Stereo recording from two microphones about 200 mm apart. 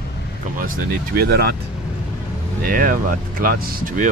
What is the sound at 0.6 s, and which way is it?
Speech, 45° right (ahead or behind).